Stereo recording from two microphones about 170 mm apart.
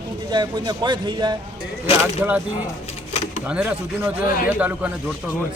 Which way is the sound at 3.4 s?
5° right (ahead or behind).